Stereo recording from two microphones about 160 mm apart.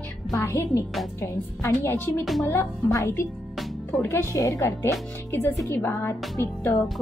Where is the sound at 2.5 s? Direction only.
15° left (ahead or behind).